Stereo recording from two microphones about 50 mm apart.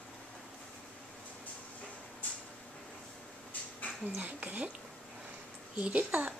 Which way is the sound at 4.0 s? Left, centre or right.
Right.